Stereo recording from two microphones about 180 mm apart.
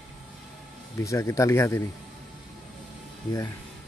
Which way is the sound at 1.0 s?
15° left (ahead or behind).